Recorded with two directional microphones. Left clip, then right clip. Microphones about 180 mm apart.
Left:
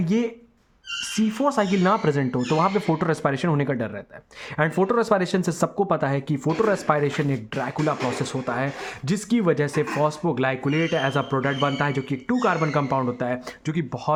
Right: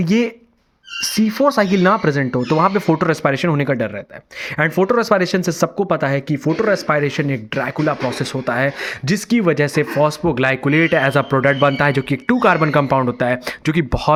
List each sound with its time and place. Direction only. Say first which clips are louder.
0.0 s speech: right 7 dB; 20° right (ahead or behind)